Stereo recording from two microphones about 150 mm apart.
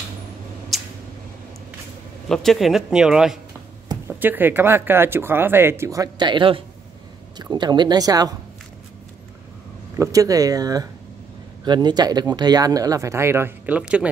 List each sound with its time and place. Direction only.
0.7 s a sound: centre (ahead or behind)
2.2 s speech: 5° left (ahead or behind); by 8.4 s 25° right (ahead or behind)
9.9 s speech: 20° right (ahead or behind)